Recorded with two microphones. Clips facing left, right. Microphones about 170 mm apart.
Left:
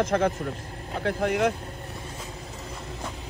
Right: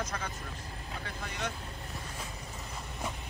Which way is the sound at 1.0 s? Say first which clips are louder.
Left 16 dB; 80° left.